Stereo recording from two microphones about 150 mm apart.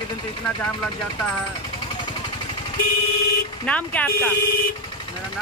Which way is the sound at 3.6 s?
10° left (ahead or behind).